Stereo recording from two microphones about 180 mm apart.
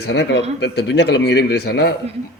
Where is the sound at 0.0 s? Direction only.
70° left (ahead or behind).